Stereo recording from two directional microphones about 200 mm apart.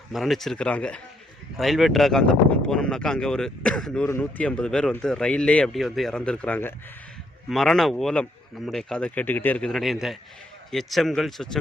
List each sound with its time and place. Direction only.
0.1 s speech: centre (ahead or behind)